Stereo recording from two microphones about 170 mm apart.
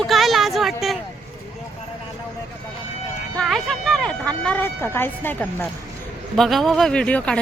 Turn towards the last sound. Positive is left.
turn(degrees=5)  # may be behind; listen again after turning